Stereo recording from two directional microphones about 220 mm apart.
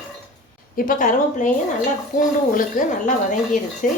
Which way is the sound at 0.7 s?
40° left (ahead or behind).